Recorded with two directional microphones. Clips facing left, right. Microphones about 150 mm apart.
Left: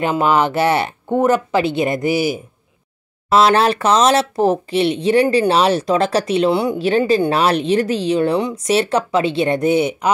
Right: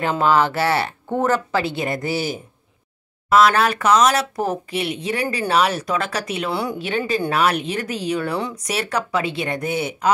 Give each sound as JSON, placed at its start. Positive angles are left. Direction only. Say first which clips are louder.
{"t": 0.0, "sound": "speech", "louder": "left 2 dB", "side_deg": 15}
{"t": 3.3, "sound": "speech", "louder": "left 3 dB", "side_deg": 30}